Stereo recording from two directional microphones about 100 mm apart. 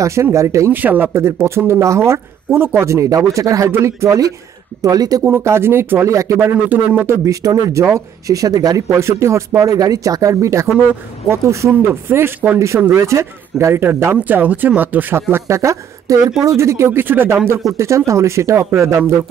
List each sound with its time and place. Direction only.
0.0 s speech: 30° right (ahead or behind)
0.7 s speech: 20° right (ahead or behind); by 5.2 s 40° right (ahead or behind)
5.2 s speech: 25° right (ahead or behind)
6.5 s speech: 15° right (ahead or behind)
7.2 s speech: 35° right (ahead or behind); by 15.2 s 20° right (ahead or behind)
15.3 s speech: 30° right (ahead or behind)